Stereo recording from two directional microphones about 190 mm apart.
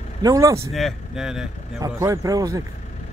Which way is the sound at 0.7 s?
Centre (ahead or behind).